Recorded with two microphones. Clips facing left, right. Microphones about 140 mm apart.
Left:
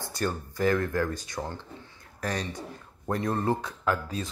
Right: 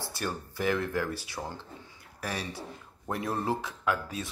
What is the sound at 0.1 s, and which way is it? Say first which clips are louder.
Speech: left 7 dB; 5° right (ahead or behind).